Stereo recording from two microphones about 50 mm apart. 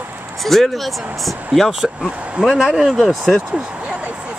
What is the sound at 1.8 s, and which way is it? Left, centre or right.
Speech, centre.